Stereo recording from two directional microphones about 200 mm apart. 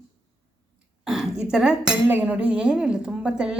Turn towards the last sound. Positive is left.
turn(degrees=-5)  # may be behind; listen again after turning